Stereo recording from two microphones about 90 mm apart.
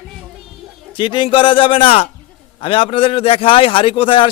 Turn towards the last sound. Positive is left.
turn(degrees=80)